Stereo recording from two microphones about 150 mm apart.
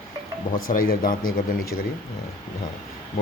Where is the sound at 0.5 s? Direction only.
70° left (ahead or behind).